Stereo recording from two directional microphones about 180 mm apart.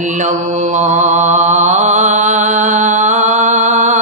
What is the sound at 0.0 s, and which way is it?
Mantra, 45° right (ahead or behind).